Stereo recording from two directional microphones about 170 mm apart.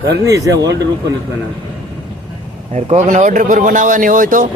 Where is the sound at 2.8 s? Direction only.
40° right (ahead or behind).